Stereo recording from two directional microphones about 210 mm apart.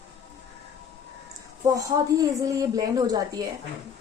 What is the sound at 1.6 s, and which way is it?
Speech, 15° right (ahead or behind).